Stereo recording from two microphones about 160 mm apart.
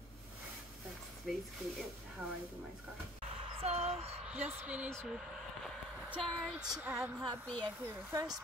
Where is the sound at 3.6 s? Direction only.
40° right (ahead or behind).